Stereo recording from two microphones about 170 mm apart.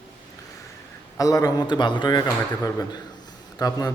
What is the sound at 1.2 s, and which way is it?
A man's voice, 20° left (ahead or behind).